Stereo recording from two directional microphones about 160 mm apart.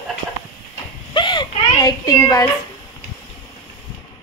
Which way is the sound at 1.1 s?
30° left (ahead or behind).